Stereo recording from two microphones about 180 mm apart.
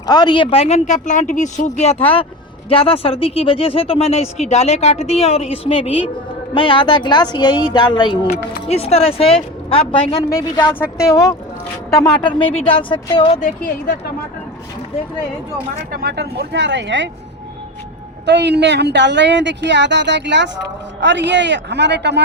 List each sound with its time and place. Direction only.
0.0 s speech: 25° left (ahead or behind)
12.2 s speech: 30° left (ahead or behind)
13.4 s a woman's voice: 55° left (ahead or behind)
15.9 s speech: 60° right (ahead or behind); by 17.1 s 85° right
18.3 s speech: 70° right (ahead or behind)